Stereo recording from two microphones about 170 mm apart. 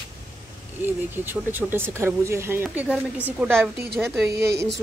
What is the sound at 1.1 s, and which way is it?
Speech, 10° right (ahead or behind).